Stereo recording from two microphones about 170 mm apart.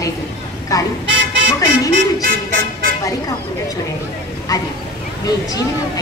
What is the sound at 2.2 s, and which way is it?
Music, 55° right (ahead or behind).